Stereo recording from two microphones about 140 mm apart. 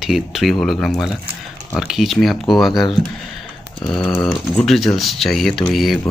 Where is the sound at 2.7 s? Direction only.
30° left (ahead or behind).